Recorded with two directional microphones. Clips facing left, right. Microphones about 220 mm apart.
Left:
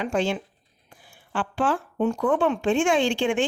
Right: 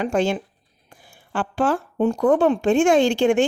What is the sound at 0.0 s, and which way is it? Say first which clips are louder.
A woman's voice: right 4 dB; 45° right (ahead or behind).